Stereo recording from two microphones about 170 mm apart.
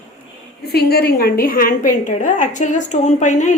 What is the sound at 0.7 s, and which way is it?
A woman's voice, 70° left (ahead or behind).